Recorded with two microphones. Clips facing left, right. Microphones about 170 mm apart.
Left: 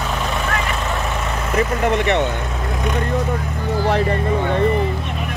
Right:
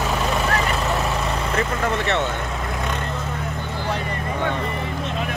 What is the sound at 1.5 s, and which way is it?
Speech, 15° left (ahead or behind).